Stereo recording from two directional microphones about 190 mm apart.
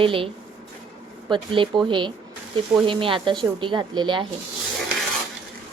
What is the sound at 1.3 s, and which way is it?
Speech, 25° right (ahead or behind).